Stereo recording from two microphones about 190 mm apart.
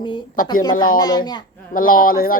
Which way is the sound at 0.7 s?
45° left (ahead or behind).